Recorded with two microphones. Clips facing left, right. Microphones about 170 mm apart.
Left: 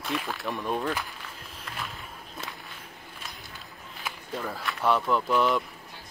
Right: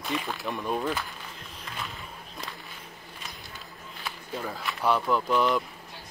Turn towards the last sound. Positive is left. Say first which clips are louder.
# even
turn(degrees=0)  # may be behind; listen again after turning